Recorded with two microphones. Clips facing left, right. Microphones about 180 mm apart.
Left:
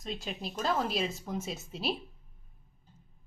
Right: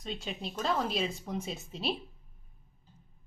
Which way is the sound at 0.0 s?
Centre (ahead or behind).